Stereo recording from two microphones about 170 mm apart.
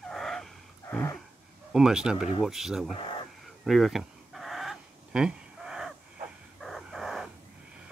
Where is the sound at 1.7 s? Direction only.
5° right (ahead or behind).